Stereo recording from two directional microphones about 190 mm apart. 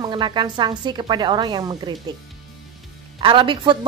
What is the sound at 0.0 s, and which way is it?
Speech, 25° right (ahead or behind).